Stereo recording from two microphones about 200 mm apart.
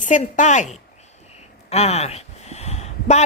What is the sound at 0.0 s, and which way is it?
A woman's voice, 40° left (ahead or behind).